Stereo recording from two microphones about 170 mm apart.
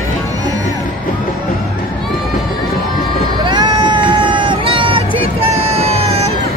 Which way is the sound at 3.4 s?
25° right (ahead or behind).